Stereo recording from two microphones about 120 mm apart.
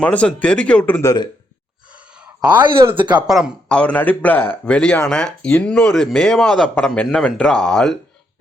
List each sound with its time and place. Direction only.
0.0 s speech: 10° left (ahead or behind)
1.0 s speech: 35° left (ahead or behind)
1.9 s a sound: 10° right (ahead or behind)
2.6 s speech: 40° right (ahead or behind)
3.2 s speech: 5° right (ahead or behind)
3.7 s speech: 10° left (ahead or behind)